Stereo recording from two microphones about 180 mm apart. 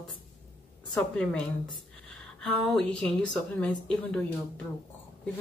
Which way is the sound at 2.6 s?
5° left (ahead or behind).